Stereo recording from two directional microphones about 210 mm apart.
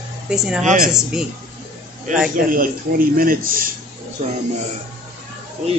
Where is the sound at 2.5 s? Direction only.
40° right (ahead or behind).